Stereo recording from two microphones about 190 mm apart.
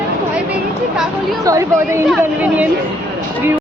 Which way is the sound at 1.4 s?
15° right (ahead or behind).